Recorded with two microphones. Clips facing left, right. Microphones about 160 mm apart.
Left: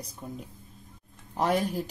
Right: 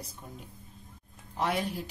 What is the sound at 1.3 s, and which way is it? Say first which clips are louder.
Speech: left 4 dB; 40° left (ahead or behind).